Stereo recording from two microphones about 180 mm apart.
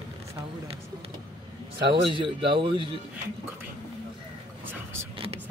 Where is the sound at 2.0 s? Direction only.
30° right (ahead or behind).